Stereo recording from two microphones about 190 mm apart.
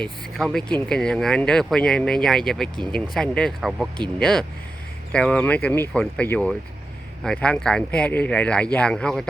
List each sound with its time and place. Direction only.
0.0 s speech: centre (ahead or behind)